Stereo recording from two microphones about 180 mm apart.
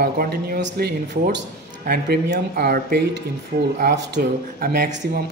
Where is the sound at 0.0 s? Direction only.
55° right (ahead or behind).